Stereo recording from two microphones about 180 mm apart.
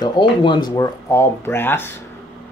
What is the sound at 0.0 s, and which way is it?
Speech, 25° left (ahead or behind).